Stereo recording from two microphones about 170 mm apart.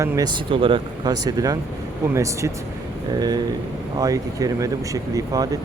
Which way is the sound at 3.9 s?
20° right (ahead or behind).